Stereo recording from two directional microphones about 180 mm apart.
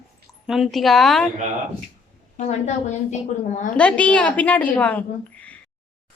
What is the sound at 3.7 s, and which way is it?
A woman's voice, 5° left (ahead or behind).